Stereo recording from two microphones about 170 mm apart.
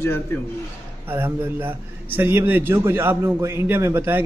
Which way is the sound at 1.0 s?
10° right (ahead or behind).